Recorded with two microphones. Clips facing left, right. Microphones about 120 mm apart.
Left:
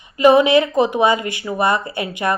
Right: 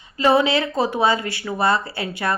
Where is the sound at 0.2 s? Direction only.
15° left (ahead or behind).